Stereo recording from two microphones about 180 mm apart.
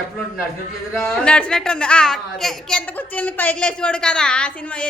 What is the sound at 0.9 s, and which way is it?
A woman's voice, centre (ahead or behind).